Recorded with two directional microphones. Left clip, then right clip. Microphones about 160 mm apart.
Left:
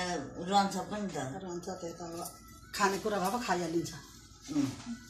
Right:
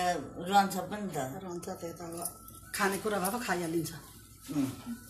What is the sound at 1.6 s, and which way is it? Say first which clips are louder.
A woman's voice: even; 5° left (ahead or behind).